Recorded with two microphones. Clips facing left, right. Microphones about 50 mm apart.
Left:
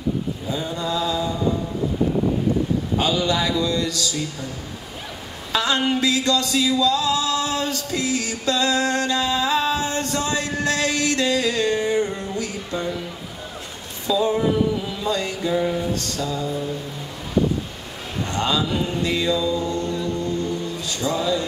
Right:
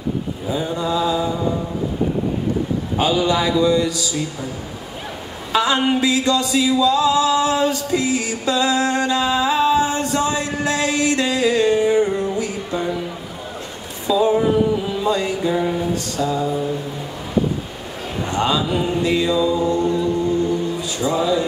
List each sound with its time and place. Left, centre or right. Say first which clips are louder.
0.5 s mantra: right 5 dB; centre
3.0 s a man's voice: right 5 dB; centre
5.5 s singing: right 4 dB; centre
14.0 s a sound: right 4 dB; centre
18.2 s mantra: right 3 dB; centre